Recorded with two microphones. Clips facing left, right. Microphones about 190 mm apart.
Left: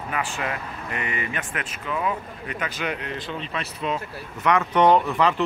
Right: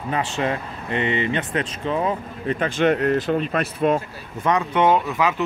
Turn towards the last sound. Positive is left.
turn(degrees=0)  # may be behind; listen again after turning